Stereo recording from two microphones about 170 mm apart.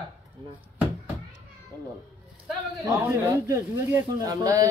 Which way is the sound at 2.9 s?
20° right (ahead or behind).